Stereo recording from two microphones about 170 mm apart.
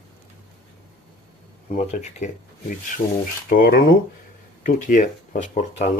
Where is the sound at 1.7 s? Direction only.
45° left (ahead or behind).